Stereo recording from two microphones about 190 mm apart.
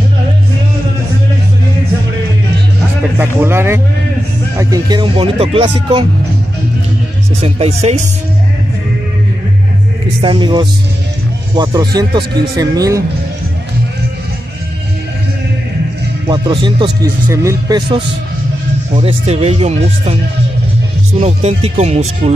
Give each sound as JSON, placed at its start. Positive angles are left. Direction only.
{"t": 3.2, "sound": "speech", "side_deg": -10}
{"t": 7.4, "sound": "speech", "side_deg": -30}
{"t": 10.2, "sound": "speech", "side_deg": -25}
{"t": 16.3, "sound": "speech", "side_deg": -20}
{"t": 21.2, "sound": "speech", "side_deg": -35}